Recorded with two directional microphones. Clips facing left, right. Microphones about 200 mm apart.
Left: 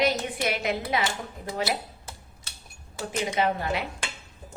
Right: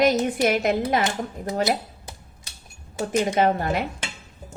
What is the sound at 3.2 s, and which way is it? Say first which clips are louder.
Speech: right 4 dB; 45° right (ahead or behind).